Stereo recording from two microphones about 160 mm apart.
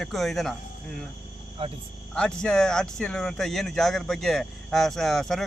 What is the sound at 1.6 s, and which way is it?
Speech, 35° right (ahead or behind).